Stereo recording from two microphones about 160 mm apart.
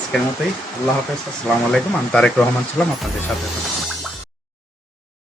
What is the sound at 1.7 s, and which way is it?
Speech, 5° left (ahead or behind).